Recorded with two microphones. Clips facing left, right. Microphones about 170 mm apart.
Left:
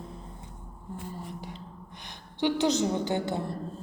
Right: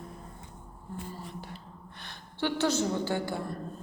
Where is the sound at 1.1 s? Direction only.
15° left (ahead or behind).